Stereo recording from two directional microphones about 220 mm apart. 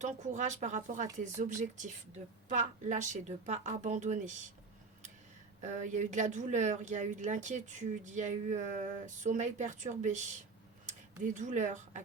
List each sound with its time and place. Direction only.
0.0 s speech: 35° right (ahead or behind)
5.6 s speech: 35° right (ahead or behind)